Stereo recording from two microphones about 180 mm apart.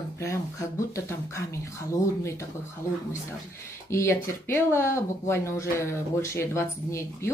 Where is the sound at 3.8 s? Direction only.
15° left (ahead or behind).